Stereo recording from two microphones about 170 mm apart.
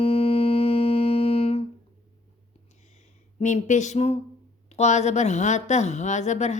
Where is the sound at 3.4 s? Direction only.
45° left (ahead or behind).